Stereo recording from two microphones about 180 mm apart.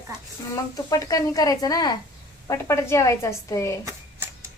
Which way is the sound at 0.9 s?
20° left (ahead or behind).